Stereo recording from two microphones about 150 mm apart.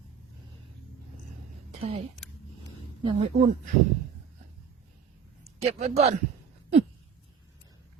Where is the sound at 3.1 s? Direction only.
45° right (ahead or behind).